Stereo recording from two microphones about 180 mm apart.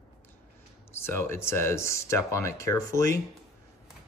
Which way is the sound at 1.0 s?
15° left (ahead or behind).